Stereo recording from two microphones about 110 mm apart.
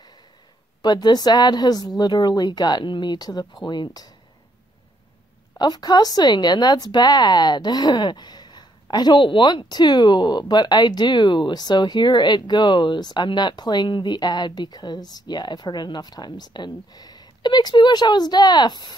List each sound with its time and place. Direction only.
0.8 s speech: 40° left (ahead or behind)
5.6 s speech: 40° left (ahead or behind)